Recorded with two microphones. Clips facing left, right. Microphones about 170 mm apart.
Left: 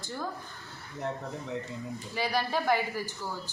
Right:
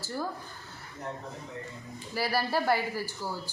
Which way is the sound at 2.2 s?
5° right (ahead or behind).